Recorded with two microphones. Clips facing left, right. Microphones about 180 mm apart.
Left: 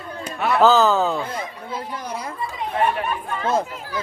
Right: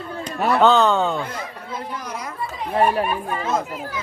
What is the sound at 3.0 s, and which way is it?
Speech, 10° right (ahead or behind).